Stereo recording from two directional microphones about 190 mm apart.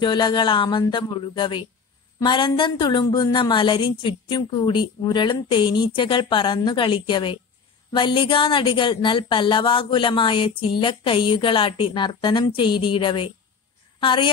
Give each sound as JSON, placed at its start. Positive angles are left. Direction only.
{"t": 0.0, "sound": "a woman's voice", "side_deg": 25}